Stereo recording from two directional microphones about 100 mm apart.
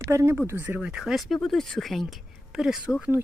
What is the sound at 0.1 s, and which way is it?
Speech, 30° right (ahead or behind).